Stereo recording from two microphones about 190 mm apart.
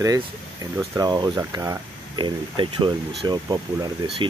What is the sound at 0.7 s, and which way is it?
Speech, 20° right (ahead or behind).